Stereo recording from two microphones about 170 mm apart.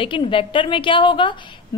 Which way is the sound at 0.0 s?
30° left (ahead or behind).